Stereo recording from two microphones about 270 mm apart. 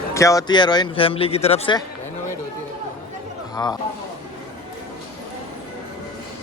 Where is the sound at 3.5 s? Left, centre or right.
Centre.